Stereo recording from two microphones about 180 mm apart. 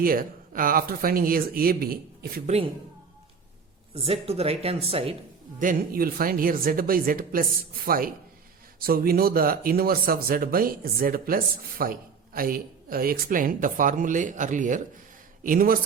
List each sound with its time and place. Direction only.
0.0 s speech: 55° right (ahead or behind)
3.9 s speech: 30° right (ahead or behind)
5.5 s speech: 50° right (ahead or behind)